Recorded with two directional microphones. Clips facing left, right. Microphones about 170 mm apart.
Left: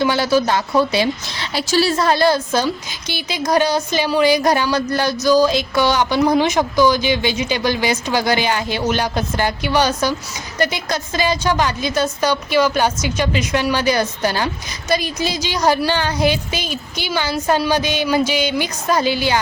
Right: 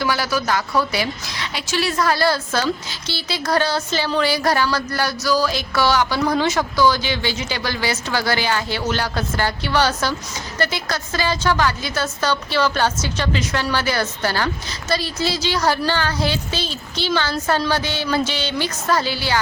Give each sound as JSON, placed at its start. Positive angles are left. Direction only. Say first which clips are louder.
{"t": 0.0, "sound": "a woman's voice", "louder": "left 6 dB", "side_deg": 25}